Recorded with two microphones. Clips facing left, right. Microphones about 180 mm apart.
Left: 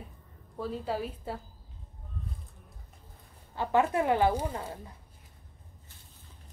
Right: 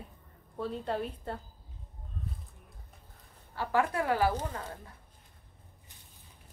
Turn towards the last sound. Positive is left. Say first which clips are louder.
# left 3 dB
turn(degrees=10)  # may be behind; listen again after turning